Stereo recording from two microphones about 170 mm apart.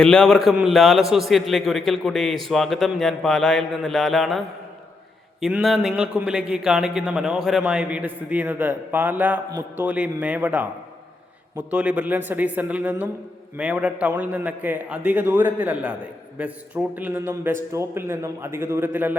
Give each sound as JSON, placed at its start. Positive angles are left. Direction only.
{"t": 0.0, "sound": "a man's voice", "side_deg": 5}
{"t": 9.5, "sound": "a man's voice", "side_deg": -20}
{"t": 9.8, "sound": "a man's voice", "side_deg": -10}